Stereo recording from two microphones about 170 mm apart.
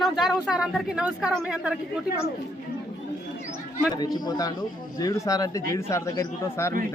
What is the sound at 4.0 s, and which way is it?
A man's voice, 25° left (ahead or behind).